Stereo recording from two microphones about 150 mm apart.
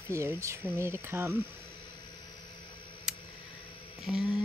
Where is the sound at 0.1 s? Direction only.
20° right (ahead or behind).